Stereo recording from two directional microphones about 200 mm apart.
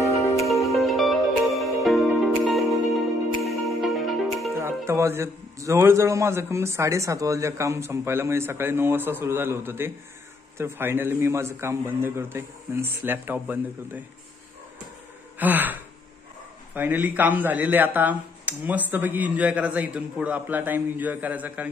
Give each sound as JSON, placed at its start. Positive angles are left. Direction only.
{"t": 0.0, "sound": "music", "side_deg": 0}
{"t": 3.4, "sound": "music", "side_deg": 0}
{"t": 4.6, "sound": "a man's voice", "side_deg": -15}
{"t": 15.3, "sound": "gasp", "side_deg": -10}
{"t": 16.7, "sound": "a man's voice", "side_deg": -10}